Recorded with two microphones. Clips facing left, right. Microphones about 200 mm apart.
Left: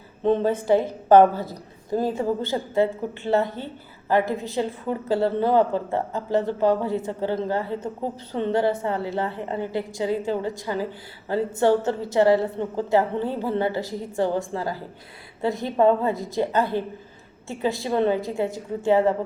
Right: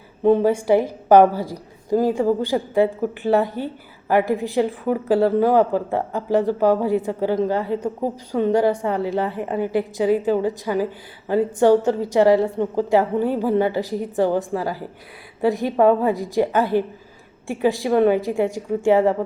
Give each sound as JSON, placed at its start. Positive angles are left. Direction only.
{"t": 0.2, "sound": "a woman's voice", "side_deg": -10}